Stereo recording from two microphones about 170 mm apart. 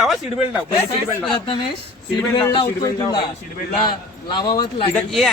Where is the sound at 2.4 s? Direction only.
20° left (ahead or behind).